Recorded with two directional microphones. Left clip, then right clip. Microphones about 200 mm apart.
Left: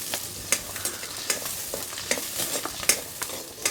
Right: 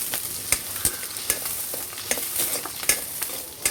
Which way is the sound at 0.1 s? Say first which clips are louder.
Left 1 dB; centre (ahead or behind).